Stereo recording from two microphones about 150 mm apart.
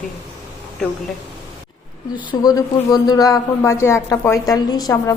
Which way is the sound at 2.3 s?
25° left (ahead or behind).